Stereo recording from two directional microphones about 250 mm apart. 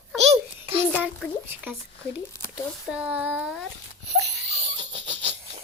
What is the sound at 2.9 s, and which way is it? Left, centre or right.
Speech, centre.